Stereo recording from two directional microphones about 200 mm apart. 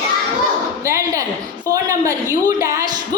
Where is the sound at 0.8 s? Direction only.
15° right (ahead or behind).